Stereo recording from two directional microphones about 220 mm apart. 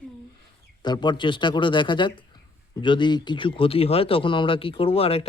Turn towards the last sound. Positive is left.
turn(degrees=25)  # may be behind; listen again after turning